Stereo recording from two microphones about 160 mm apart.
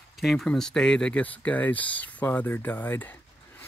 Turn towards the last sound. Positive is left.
turn(degrees=10)  # may be behind; listen again after turning